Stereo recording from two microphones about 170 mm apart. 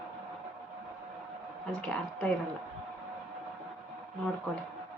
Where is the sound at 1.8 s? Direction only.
5° left (ahead or behind).